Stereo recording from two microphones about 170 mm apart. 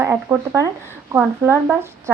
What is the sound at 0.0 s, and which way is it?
Speech, 15° right (ahead or behind).